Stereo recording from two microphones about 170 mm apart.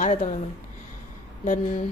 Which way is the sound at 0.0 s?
50° left (ahead or behind).